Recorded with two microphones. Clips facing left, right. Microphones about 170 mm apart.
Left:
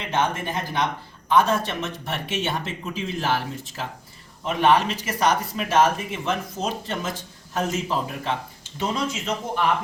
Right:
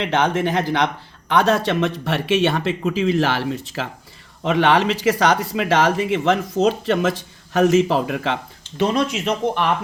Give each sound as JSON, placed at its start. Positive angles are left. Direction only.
{"t": 0.0, "sound": "speech", "side_deg": -80}
{"t": 1.3, "sound": "speech", "side_deg": -75}
{"t": 4.4, "sound": "speech", "side_deg": -85}
{"t": 8.8, "sound": "speech", "side_deg": -70}